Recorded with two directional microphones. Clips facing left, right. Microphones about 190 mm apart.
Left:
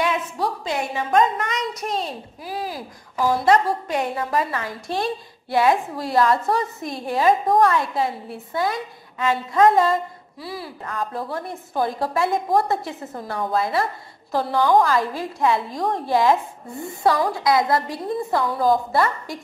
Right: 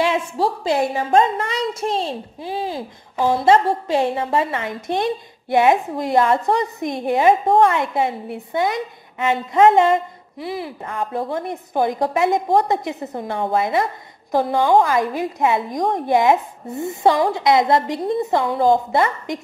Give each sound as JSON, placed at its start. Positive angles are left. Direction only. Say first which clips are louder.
{"t": 0.0, "sound": "a woman's voice", "louder": "right 4 dB", "side_deg": -30}